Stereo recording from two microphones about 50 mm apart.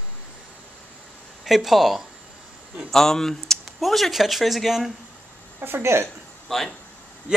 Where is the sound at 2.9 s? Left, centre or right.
Centre.